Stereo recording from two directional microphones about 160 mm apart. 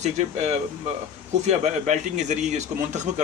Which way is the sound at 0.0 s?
45° right (ahead or behind).